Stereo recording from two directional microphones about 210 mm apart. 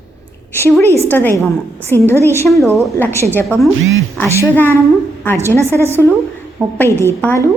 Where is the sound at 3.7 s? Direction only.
70° right (ahead or behind).